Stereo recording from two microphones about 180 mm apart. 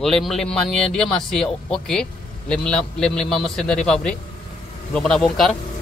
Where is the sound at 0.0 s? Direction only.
Centre (ahead or behind).